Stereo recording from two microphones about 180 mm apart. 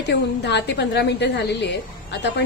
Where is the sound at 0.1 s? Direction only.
70° left (ahead or behind).